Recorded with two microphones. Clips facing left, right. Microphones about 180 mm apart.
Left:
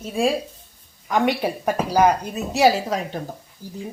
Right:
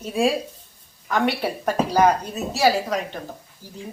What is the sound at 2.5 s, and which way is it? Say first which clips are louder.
Speech: left 2 dB; 20° left (ahead or behind).